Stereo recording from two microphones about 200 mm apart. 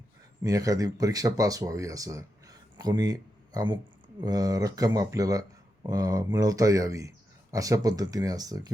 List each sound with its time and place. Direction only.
0.4 s speech: 15° right (ahead or behind)